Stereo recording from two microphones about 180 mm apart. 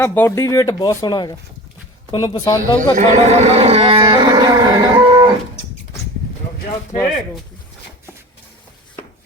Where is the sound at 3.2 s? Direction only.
40° right (ahead or behind).